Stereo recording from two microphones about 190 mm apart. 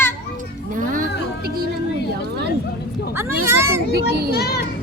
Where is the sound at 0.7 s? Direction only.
45° right (ahead or behind).